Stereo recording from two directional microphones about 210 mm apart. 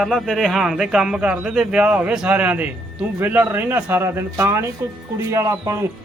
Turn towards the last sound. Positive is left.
turn(degrees=-15)  # may be behind; listen again after turning